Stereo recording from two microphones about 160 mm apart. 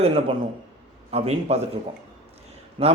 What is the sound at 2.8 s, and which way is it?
Speech, 30° right (ahead or behind).